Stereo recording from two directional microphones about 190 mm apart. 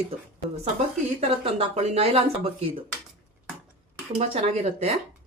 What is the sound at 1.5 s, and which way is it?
Speech, 35° right (ahead or behind).